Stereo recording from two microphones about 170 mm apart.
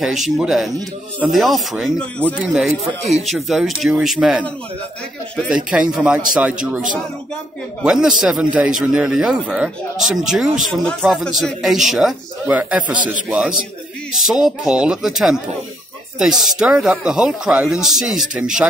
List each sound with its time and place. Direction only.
0.0 s speech: centre (ahead or behind)
5.5 s a man's voice: 5° right (ahead or behind)
7.8 s a man's voice: 5° right (ahead or behind)